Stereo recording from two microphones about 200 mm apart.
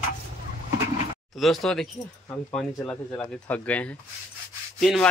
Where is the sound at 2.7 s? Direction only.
10° left (ahead or behind).